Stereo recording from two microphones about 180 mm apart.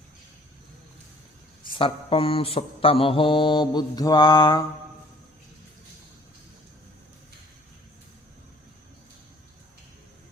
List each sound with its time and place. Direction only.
1.6 s mantra: 30° left (ahead or behind)